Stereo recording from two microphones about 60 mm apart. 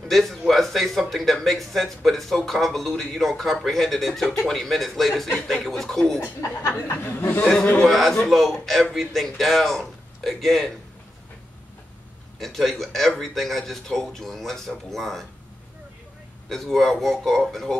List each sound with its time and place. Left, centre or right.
0.1 s speech: centre
6.9 s speech: left
7.9 s speech: centre
12.4 s speech: centre
16.4 s speech: centre